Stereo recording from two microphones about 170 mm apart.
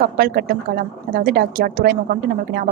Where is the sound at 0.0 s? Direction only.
65° right (ahead or behind).